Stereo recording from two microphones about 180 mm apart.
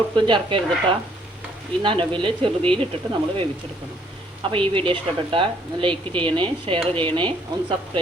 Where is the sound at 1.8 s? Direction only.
30° right (ahead or behind).